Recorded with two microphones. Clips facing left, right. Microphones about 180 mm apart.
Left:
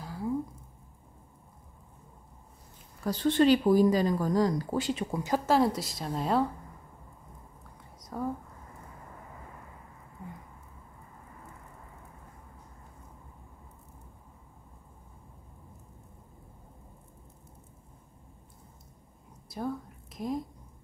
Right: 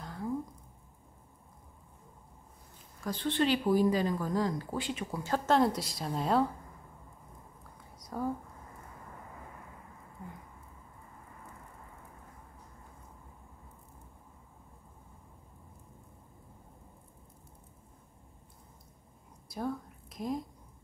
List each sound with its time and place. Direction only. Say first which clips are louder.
0.0 s a sound: left 3 dB; 5° left (ahead or behind)
3.0 s speech: left 6 dB; 40° left (ahead or behind)
5.1 s speech: left 2 dB; 15° left (ahead or behind)
5.5 s a woman's voice: left 1 dB; centre (ahead or behind)
8.0 s whispering: left 1 dB; centre (ahead or behind)
19.5 s a sound: left 1 dB; centre (ahead or behind)